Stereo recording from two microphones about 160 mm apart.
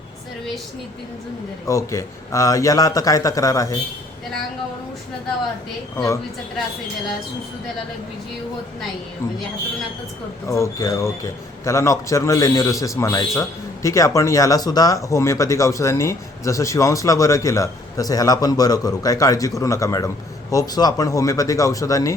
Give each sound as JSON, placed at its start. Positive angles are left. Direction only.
{"t": 1.6, "sound": "speech", "side_deg": 20}
{"t": 10.5, "sound": "speech", "side_deg": 20}